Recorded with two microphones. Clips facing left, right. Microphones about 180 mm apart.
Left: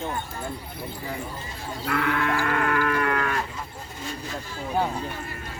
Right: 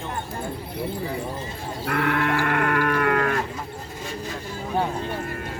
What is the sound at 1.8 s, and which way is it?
Livestock, 50° right (ahead or behind).